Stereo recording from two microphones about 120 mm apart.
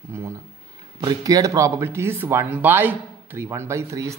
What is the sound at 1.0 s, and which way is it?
Speech, 30° right (ahead or behind).